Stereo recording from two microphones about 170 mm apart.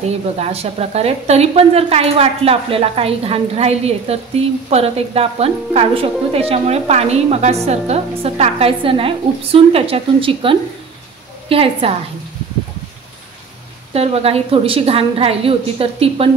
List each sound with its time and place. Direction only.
0.4 s a woman's voice: 35° right (ahead or behind)
13.9 s a woman's voice: 35° right (ahead or behind)